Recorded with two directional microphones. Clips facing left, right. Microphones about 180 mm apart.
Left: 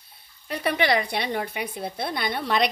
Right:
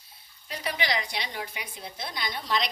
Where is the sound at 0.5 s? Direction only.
60° left (ahead or behind).